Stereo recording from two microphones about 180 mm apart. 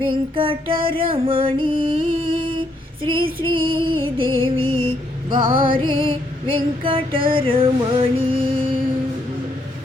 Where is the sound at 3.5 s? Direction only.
25° right (ahead or behind).